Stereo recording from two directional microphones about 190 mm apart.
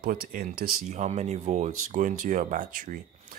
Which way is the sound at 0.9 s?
35° right (ahead or behind).